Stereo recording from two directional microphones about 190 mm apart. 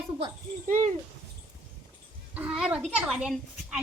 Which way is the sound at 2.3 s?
5° right (ahead or behind).